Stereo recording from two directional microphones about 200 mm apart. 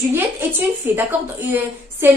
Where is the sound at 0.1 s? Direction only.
10° right (ahead or behind).